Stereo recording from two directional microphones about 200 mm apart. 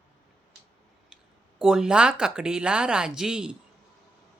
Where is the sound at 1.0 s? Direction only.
5° right (ahead or behind).